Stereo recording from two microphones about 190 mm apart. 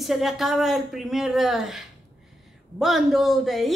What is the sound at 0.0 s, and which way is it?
A woman's voice, centre (ahead or behind).